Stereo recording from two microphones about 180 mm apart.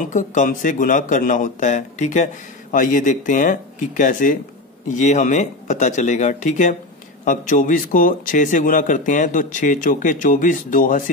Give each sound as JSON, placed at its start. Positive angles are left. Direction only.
{"t": 0.0, "sound": "speech", "side_deg": 45}